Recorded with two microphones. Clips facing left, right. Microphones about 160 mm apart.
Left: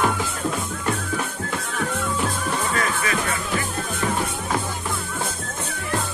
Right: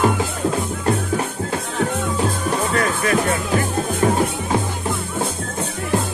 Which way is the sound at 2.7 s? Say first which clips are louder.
Right 5 dB; 45° right (ahead or behind).